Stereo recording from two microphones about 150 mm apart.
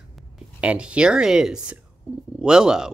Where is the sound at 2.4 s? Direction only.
5° right (ahead or behind).